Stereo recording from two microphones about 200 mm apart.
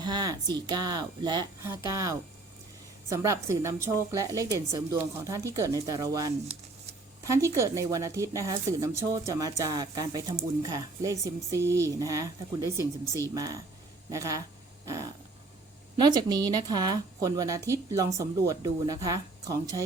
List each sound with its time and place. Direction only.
0.0 s a woman's voice: 20° right (ahead or behind)
16.0 s a woman's voice: 20° right (ahead or behind)